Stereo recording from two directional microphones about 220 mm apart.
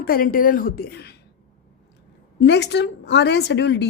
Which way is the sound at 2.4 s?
50° left (ahead or behind).